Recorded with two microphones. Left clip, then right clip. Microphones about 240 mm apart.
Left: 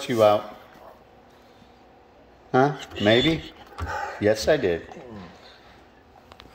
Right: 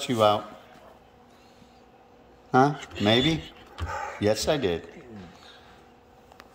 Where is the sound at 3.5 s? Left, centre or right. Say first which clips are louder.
Left 3 dB; centre.